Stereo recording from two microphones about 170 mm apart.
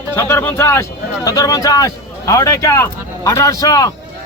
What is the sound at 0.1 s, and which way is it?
A man's voice, 15° left (ahead or behind).